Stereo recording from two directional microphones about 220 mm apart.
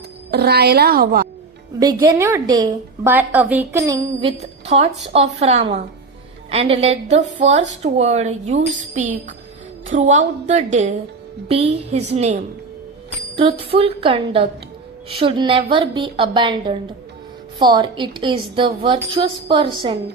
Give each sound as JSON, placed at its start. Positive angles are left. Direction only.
{"t": 0.3, "sound": "speech", "side_deg": -45}
{"t": 1.8, "sound": "a woman's voice", "side_deg": -15}
{"t": 4.2, "sound": "a woman's voice", "side_deg": -30}
{"t": 13.7, "sound": "a woman's voice", "side_deg": -25}